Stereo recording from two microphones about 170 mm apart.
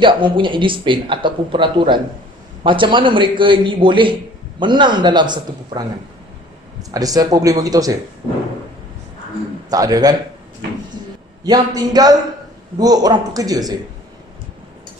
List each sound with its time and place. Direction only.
0.0 s a man's voice: 30° right (ahead or behind)
9.7 s a man's voice: 20° right (ahead or behind)
11.4 s a man's voice: 25° right (ahead or behind)